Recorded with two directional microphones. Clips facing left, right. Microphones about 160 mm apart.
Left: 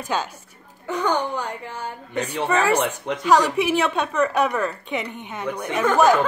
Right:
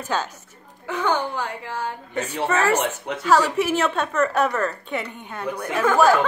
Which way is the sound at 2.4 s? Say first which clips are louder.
Left 1 dB; 15° left (ahead or behind).